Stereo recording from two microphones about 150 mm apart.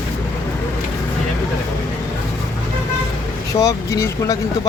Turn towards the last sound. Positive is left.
turn(degrees=20)  # may be behind; listen again after turning